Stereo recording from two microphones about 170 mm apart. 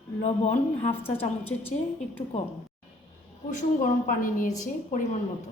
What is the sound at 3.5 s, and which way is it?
A woman's voice, 50° left (ahead or behind).